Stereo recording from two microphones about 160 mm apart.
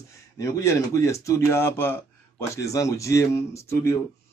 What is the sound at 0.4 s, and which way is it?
Speech, 20° left (ahead or behind).